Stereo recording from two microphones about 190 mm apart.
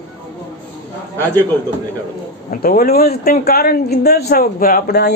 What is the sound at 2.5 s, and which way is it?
Speech, 50° left (ahead or behind).